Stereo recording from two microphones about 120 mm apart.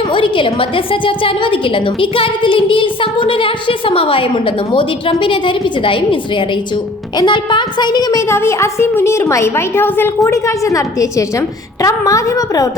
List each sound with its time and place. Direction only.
0.1 s a woman's voice: 45° left (ahead or behind); by 12.7 s 30° left (ahead or behind)